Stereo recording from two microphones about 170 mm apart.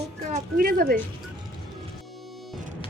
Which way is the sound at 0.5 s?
60° right (ahead or behind).